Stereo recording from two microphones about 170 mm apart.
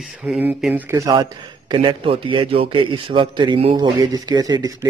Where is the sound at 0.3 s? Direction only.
5° right (ahead or behind).